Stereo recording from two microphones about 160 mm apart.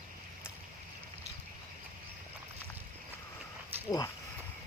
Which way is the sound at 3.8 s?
20° left (ahead or behind).